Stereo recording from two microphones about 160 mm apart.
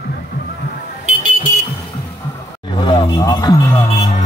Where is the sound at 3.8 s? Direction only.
40° left (ahead or behind).